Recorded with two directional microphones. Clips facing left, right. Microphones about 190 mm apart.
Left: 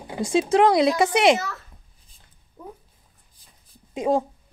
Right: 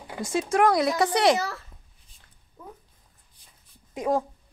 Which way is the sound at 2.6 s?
15° left (ahead or behind).